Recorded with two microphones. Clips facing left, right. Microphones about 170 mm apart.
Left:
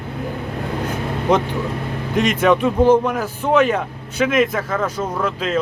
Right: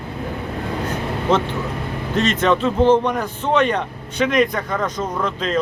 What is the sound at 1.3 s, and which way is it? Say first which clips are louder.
A man's voice: left 2 dB; 15° left (ahead or behind).